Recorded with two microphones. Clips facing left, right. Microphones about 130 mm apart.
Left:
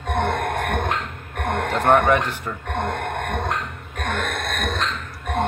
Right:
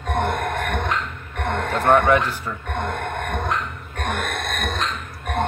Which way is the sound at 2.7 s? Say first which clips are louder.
Left 2 dB; 35° left (ahead or behind).